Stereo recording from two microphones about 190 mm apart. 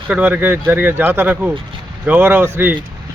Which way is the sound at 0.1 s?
5° right (ahead or behind).